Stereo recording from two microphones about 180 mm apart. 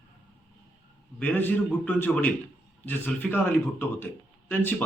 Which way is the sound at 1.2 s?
10° left (ahead or behind).